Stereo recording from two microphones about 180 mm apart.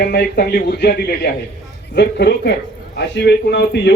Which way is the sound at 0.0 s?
60° left (ahead or behind).